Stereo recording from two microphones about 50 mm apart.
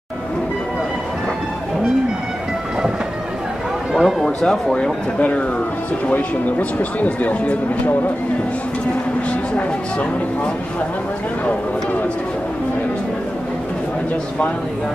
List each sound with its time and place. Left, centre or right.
3.9 s speech: centre
6.0 s speech: left
9.3 s speech: left